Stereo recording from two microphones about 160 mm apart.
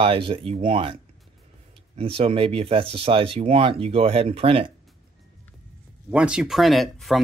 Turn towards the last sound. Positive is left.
turn(degrees=0)  # may be behind; listen again after turning